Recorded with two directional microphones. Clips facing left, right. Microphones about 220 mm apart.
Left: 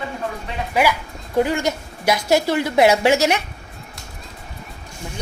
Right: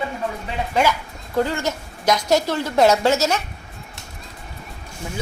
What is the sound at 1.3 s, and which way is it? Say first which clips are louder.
A woman's voice: left 3 dB; 15° left (ahead or behind).